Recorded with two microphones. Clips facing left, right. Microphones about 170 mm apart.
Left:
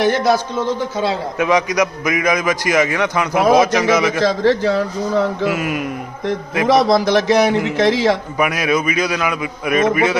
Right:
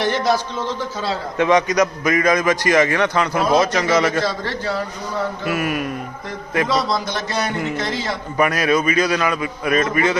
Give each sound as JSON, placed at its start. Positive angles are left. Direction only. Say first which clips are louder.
{"t": 0.1, "sound": "a man's voice", "louder": "left 3 dB", "side_deg": 50}
{"t": 1.4, "sound": "a man's voice", "louder": "right 1 dB", "side_deg": 5}
{"t": 4.2, "sound": "a man's voice", "louder": "left 8 dB", "side_deg": 90}
{"t": 5.5, "sound": "a man's voice", "louder": "left 2 dB", "side_deg": 15}
{"t": 6.7, "sound": "a man's voice", "louder": "left 8 dB", "side_deg": 90}
{"t": 8.4, "sound": "a man's voice", "louder": "even", "side_deg": 10}